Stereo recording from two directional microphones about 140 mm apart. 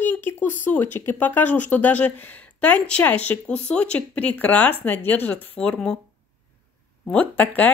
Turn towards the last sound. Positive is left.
turn(degrees=10)  # may be behind; listen again after turning